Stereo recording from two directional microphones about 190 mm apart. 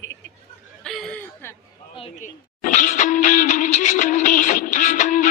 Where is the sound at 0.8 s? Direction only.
5° left (ahead or behind).